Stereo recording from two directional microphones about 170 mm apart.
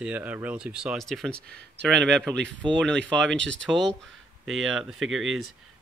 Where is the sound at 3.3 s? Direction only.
90° right.